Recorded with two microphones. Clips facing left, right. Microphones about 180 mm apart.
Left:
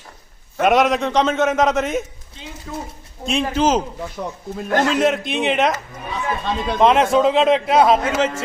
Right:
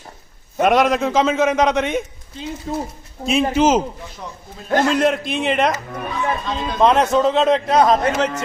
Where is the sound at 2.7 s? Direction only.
30° right (ahead or behind).